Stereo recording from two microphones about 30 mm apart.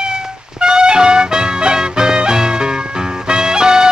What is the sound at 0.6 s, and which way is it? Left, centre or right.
Music, right.